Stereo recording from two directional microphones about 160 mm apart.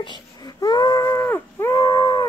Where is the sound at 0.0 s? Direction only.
25° left (ahead or behind).